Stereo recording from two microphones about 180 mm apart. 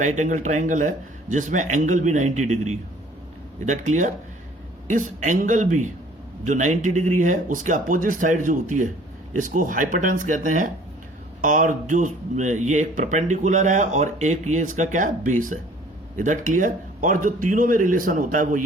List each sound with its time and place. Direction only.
0.0 s speech: 45° right (ahead or behind)